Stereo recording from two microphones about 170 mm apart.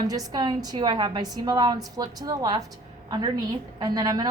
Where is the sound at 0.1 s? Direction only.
25° right (ahead or behind).